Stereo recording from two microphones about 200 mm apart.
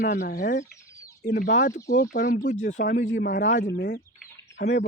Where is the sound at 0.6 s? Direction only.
15° left (ahead or behind).